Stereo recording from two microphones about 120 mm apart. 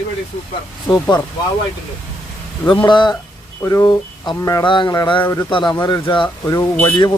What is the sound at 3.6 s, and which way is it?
Speech, 25° left (ahead or behind).